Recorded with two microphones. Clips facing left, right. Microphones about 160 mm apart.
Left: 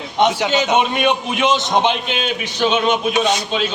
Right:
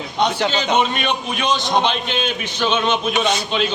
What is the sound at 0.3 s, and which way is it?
A man's voice, 10° left (ahead or behind).